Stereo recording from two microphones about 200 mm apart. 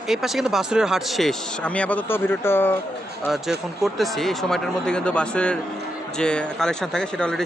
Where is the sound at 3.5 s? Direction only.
Centre (ahead or behind).